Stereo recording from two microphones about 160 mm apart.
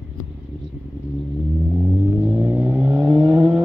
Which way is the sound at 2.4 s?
10° right (ahead or behind).